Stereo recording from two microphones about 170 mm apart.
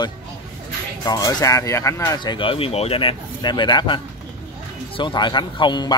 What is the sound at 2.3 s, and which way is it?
A man's voice, 30° left (ahead or behind).